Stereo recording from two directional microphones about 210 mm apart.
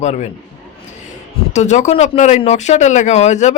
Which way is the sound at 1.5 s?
35° left (ahead or behind).